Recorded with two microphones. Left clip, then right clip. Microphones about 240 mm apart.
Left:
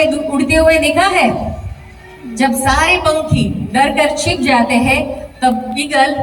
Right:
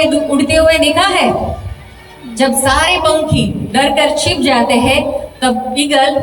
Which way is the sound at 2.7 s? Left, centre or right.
Centre.